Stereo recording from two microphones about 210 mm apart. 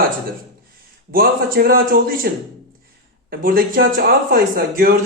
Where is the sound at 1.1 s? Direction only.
45° right (ahead or behind).